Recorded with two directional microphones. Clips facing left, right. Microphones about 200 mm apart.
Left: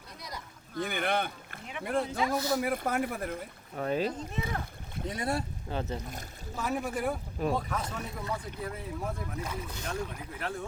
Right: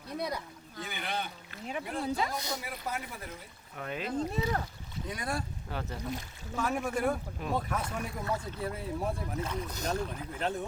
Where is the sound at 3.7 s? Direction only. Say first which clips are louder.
Left 8 dB; 35° left (ahead or behind).